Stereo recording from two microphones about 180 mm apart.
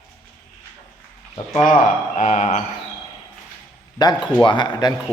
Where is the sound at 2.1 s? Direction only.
40° left (ahead or behind).